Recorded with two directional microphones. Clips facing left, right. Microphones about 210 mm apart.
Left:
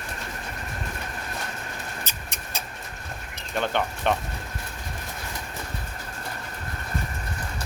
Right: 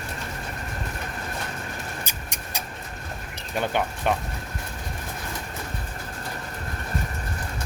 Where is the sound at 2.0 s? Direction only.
10° right (ahead or behind).